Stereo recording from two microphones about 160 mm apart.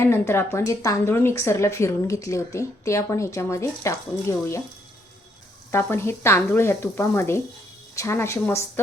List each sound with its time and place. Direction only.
0.0 s speech: 15° left (ahead or behind)
5.7 s speech: 15° left (ahead or behind)